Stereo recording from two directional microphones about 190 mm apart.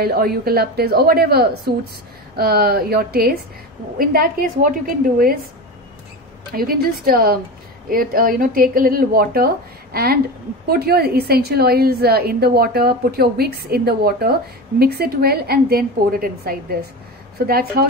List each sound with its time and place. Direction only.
0.0 s a woman's voice: 55° right (ahead or behind)
6.5 s a woman's voice: 50° right (ahead or behind)